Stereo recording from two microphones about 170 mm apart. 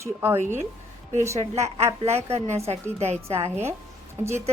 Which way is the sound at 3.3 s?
15° right (ahead or behind).